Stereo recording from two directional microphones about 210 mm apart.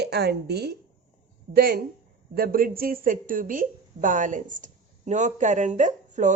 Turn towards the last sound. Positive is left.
turn(degrees=-35)  # may be behind; listen again after turning